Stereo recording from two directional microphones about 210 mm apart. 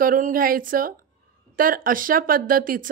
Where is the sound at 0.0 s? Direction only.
40° right (ahead or behind).